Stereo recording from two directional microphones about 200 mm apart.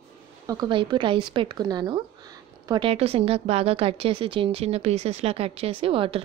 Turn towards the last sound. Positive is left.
turn(degrees=-25)  # may be behind; listen again after turning